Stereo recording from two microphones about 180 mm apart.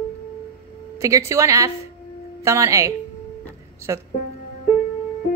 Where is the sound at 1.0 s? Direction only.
15° right (ahead or behind).